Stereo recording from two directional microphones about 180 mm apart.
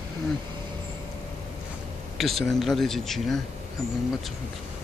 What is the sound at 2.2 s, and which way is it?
Speech, centre (ahead or behind).